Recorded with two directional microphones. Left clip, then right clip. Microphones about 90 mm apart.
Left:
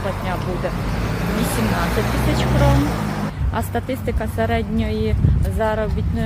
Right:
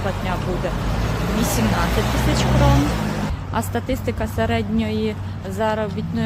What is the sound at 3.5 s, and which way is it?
A woman's voice, 30° right (ahead or behind).